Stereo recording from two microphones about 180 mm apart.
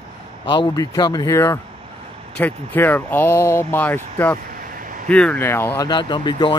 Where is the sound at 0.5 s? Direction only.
25° left (ahead or behind).